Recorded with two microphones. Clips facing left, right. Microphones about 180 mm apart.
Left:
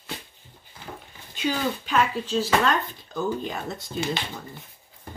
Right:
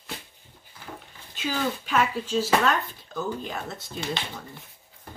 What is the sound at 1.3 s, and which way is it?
Speech, centre (ahead or behind).